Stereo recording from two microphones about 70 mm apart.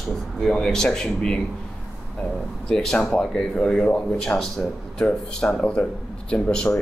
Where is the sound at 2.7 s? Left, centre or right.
Centre.